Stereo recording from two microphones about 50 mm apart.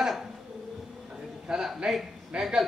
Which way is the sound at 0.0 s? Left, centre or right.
Centre.